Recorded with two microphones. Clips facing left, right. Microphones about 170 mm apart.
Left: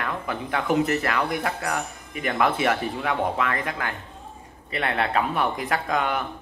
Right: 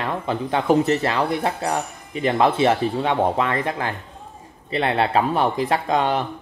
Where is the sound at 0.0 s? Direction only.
25° right (ahead or behind).